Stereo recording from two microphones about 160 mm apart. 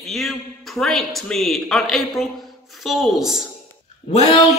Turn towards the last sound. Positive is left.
turn(degrees=45)  # may be behind; listen again after turning